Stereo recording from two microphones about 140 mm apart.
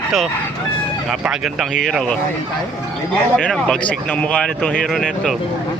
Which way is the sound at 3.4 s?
5° left (ahead or behind).